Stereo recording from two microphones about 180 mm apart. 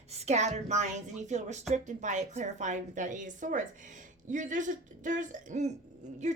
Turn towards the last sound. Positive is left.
turn(degrees=-40)  # may be behind; listen again after turning